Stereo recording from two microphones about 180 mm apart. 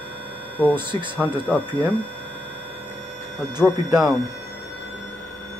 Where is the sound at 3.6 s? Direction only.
5° right (ahead or behind).